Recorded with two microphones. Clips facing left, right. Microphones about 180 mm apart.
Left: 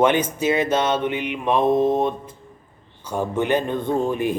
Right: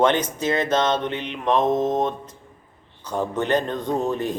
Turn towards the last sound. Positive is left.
turn(degrees=10)  # may be behind; listen again after turning